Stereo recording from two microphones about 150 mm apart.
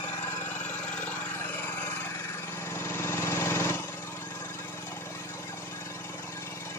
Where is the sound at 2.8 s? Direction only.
20° left (ahead or behind).